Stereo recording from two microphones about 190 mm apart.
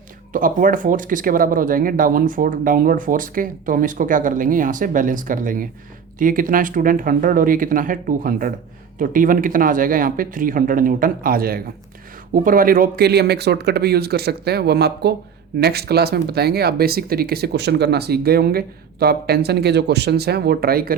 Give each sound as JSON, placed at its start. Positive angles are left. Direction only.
{"t": 0.3, "sound": "speech", "side_deg": -45}